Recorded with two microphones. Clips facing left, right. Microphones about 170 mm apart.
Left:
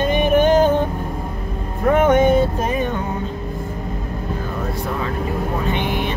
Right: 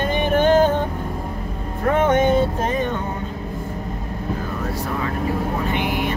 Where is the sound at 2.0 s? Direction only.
15° left (ahead or behind).